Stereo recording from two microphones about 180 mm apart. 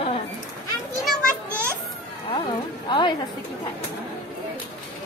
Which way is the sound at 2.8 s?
25° left (ahead or behind).